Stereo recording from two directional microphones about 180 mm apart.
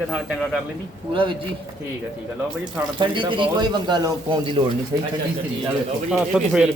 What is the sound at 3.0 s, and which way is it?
Speech, 25° right (ahead or behind).